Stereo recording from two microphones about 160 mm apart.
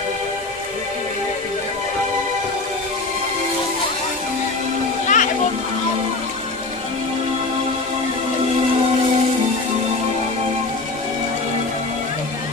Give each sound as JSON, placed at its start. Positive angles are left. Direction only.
{"t": 5.0, "sound": "music", "side_deg": 55}